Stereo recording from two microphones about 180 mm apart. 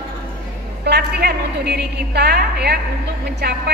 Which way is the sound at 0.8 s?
65° right (ahead or behind).